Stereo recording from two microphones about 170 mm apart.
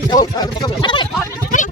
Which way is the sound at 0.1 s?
25° left (ahead or behind).